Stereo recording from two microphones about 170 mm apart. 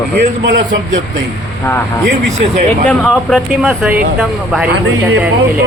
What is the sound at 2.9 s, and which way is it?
A man's voice, centre (ahead or behind).